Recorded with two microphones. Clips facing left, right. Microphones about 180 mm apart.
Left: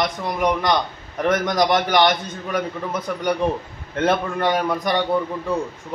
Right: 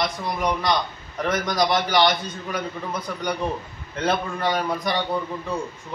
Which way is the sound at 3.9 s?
55° left (ahead or behind).